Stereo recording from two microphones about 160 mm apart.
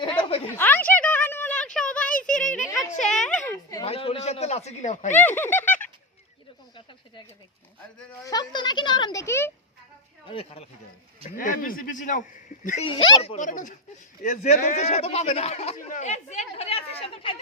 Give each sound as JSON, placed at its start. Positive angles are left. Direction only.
{"t": 0.2, "sound": "a sound", "side_deg": 35}
{"t": 0.5, "sound": "a sound", "side_deg": 10}
{"t": 3.8, "sound": "a man's voice", "side_deg": 35}
{"t": 5.1, "sound": "speech", "side_deg": 10}
{"t": 8.2, "sound": "speech", "side_deg": 25}
{"t": 9.2, "sound": "speech", "side_deg": 15}
{"t": 10.2, "sound": "speech", "side_deg": 35}
{"t": 11.3, "sound": "a man's voice", "side_deg": 60}
{"t": 12.9, "sound": "speech", "side_deg": 30}
{"t": 13.3, "sound": "speech", "side_deg": 50}